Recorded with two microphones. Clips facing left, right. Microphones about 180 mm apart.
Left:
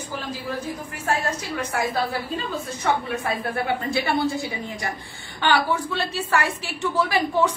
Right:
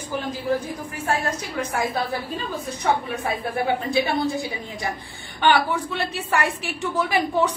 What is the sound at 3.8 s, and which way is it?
A woman's voice, 20° right (ahead or behind).